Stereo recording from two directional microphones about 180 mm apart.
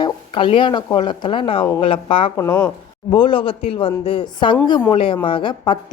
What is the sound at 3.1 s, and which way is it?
A woman's voice, 25° left (ahead or behind).